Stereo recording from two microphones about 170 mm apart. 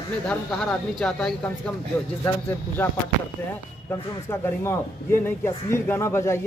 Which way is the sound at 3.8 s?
15° left (ahead or behind).